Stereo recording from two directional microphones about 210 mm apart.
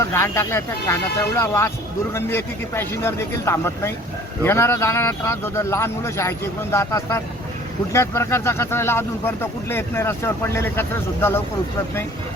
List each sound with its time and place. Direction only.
0.0 s speech: 10° left (ahead or behind)